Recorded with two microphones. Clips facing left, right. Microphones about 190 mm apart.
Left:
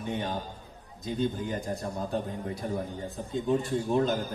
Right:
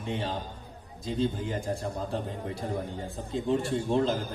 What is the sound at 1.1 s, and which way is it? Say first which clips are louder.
A man's voice: even; 25° right (ahead or behind).